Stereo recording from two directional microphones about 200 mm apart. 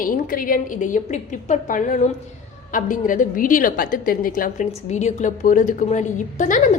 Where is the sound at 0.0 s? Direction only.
45° left (ahead or behind).